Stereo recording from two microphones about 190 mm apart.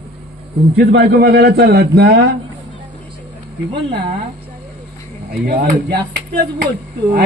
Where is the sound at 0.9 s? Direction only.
55° right (ahead or behind).